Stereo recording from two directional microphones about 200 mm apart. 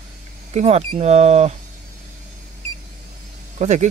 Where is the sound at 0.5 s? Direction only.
30° right (ahead or behind).